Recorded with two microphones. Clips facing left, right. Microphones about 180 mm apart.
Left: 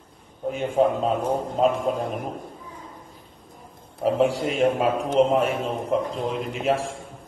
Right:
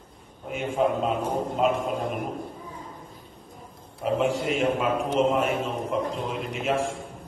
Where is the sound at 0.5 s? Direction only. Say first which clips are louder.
Left 4 dB; 35° left (ahead or behind).